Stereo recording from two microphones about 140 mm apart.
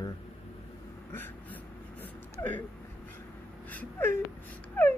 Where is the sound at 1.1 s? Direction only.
15° left (ahead or behind).